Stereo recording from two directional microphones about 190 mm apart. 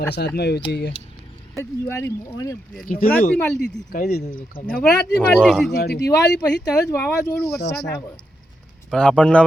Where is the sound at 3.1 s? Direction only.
5° left (ahead or behind).